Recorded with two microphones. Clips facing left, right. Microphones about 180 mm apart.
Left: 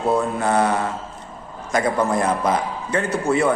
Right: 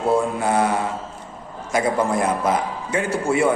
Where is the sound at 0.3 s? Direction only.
10° right (ahead or behind).